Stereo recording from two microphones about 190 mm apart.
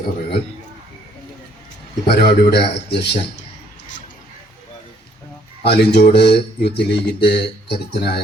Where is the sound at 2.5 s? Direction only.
60° left (ahead or behind).